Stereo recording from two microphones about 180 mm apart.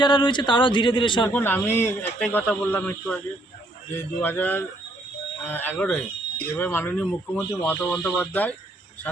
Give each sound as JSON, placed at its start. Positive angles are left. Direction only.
{"t": 0.0, "sound": "a man's voice", "side_deg": 25}
{"t": 1.3, "sound": "speech", "side_deg": 10}